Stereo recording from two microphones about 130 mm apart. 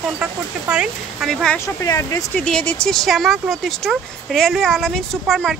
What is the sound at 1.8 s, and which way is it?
Speech, 25° left (ahead or behind).